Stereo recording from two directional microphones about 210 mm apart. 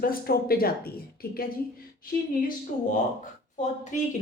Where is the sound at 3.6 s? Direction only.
35° left (ahead or behind).